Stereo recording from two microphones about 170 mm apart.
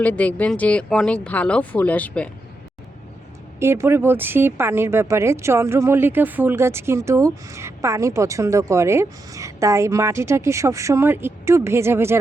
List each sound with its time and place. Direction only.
0.0 s speech: 10° left (ahead or behind)
3.6 s speech: 15° right (ahead or behind)